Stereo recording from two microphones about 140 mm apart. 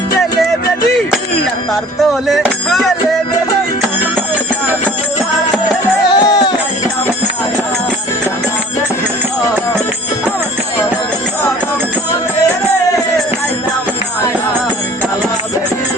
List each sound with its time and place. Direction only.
2.2 s music: centre (ahead or behind)
6.1 s music: 30° left (ahead or behind)